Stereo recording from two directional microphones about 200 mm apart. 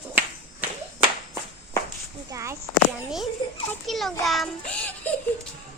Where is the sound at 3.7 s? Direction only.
Centre (ahead or behind).